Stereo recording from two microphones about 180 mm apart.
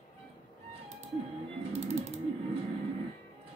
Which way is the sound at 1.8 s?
35° right (ahead or behind).